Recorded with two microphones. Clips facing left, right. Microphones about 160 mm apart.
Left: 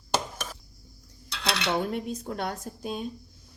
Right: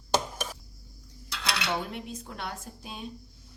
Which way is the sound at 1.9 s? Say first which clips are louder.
Left 7 dB; 45° left (ahead or behind).